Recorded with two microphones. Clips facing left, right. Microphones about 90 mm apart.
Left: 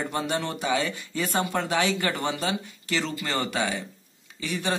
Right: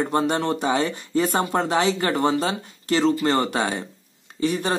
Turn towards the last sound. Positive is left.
turn(degrees=-40)  # may be behind; listen again after turning